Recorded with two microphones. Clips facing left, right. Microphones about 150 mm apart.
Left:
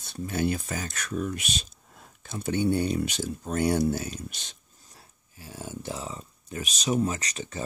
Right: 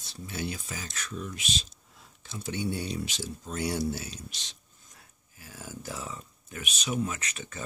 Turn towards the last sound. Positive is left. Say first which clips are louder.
# left 5 dB
turn(degrees=35)  # may be behind; listen again after turning